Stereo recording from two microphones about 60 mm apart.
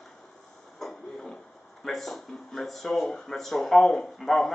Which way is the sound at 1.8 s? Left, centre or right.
Centre.